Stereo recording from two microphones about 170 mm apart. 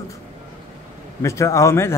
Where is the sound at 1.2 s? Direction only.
15° left (ahead or behind).